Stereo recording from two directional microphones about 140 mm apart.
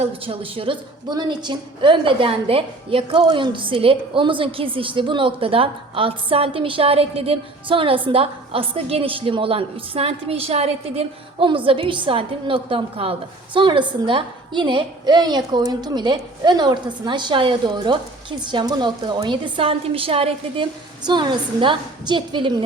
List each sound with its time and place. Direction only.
0.0 s a woman's voice: 40° right (ahead or behind)